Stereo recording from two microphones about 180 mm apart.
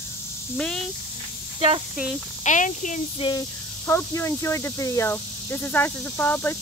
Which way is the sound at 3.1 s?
25° left (ahead or behind).